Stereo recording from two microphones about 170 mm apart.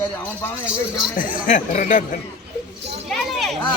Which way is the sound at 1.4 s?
45° left (ahead or behind).